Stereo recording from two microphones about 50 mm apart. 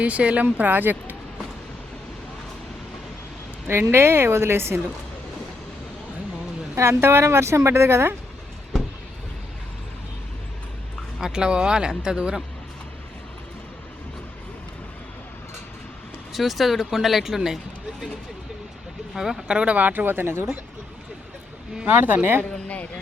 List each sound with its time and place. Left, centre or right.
0.0 s speech: right
3.7 s speech: right
6.7 s speech: right
11.2 s speech: centre
16.3 s speech: centre
19.1 s speech: centre
19.5 s speech: right
21.8 s speech: right
22.4 s a sound: left